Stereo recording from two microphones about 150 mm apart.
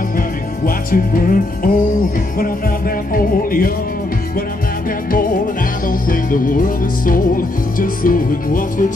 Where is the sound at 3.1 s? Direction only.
70° left (ahead or behind).